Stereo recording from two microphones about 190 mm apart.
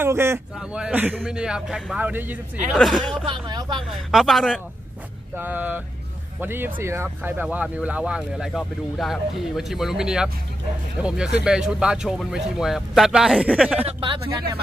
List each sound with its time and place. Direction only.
0.0 s speech: 15° right (ahead or behind)
3.3 s speech: 20° right (ahead or behind)
4.1 s speech: centre (ahead or behind)
13.8 s speech: 25° right (ahead or behind)